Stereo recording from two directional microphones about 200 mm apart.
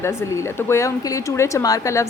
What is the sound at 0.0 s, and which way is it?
A woman's voice, 15° left (ahead or behind).